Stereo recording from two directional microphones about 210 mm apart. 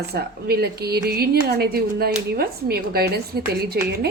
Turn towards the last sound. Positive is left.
turn(degrees=-50)  # may be behind; listen again after turning